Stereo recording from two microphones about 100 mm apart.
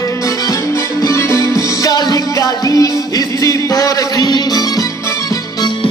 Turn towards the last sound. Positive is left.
turn(degrees=40)  # may be behind; listen again after turning